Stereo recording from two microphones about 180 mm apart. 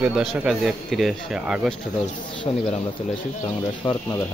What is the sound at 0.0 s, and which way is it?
Speech, centre (ahead or behind).